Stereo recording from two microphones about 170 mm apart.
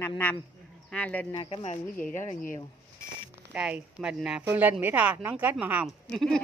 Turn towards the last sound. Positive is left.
turn(degrees=5)  # may be behind; listen again after turning